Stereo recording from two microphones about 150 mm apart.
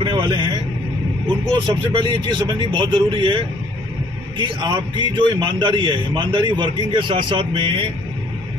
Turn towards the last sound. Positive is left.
turn(degrees=-35)  # may be behind; listen again after turning